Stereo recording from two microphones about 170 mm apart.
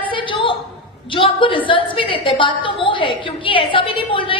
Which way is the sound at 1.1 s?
30° left (ahead or behind).